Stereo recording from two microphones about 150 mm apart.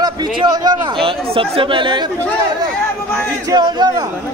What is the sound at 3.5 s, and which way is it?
Speech, 30° right (ahead or behind).